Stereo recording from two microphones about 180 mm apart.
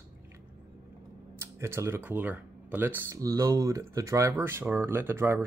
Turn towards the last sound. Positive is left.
turn(degrees=-15)  # may be behind; listen again after turning